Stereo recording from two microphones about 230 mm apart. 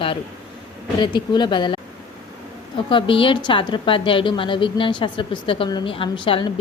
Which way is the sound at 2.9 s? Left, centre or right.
Left.